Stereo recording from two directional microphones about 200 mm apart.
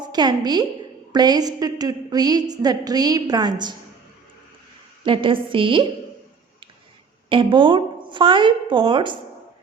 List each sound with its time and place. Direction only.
0.0 s a woman's voice: 20° right (ahead or behind)
5.0 s a woman's voice: 25° right (ahead or behind)
7.3 s a woman's voice: 25° right (ahead or behind)